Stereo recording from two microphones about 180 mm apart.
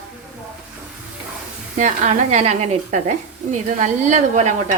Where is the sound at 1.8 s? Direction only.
40° right (ahead or behind).